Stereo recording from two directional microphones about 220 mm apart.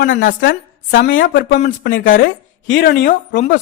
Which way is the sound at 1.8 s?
60° left (ahead or behind).